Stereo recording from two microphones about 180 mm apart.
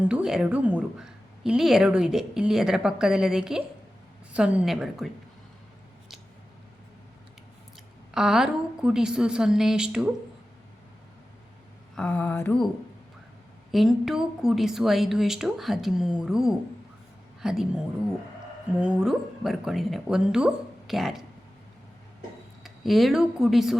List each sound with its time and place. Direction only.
0.1 s a woman's voice: 5° right (ahead or behind)
8.1 s a woman's voice: 5° right (ahead or behind)
11.9 s a sound: 10° left (ahead or behind)
13.7 s a woman's voice: centre (ahead or behind)
22.6 s speech: centre (ahead or behind)